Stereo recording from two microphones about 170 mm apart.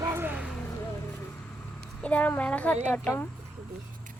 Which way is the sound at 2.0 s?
10° left (ahead or behind).